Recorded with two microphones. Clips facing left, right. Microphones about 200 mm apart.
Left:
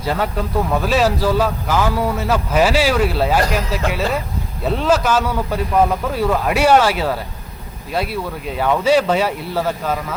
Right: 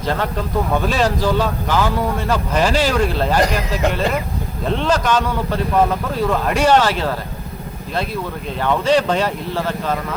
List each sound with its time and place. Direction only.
0.0 s speech: 10° left (ahead or behind)
4.6 s speech: 5° left (ahead or behind)